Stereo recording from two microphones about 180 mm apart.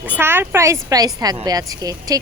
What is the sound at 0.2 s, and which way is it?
Speech, 10° right (ahead or behind).